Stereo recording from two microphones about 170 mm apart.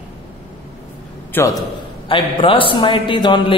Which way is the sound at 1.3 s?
10° left (ahead or behind).